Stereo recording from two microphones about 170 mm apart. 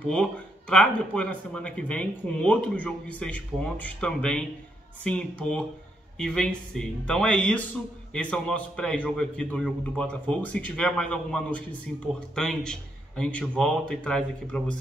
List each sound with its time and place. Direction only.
0.0 s a man's voice: 5° left (ahead or behind)